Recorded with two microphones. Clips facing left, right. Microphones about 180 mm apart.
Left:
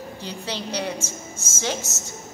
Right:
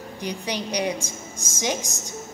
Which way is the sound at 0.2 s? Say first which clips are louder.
Right 4 dB; 15° right (ahead or behind).